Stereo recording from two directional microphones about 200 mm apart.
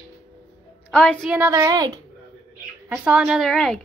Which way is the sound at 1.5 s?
20° right (ahead or behind).